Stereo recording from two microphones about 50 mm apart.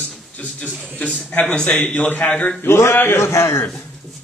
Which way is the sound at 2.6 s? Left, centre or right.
Left.